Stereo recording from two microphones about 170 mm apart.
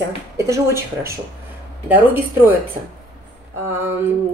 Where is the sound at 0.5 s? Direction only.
15° right (ahead or behind).